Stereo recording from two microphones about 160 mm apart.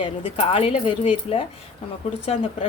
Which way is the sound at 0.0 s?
35° left (ahead or behind).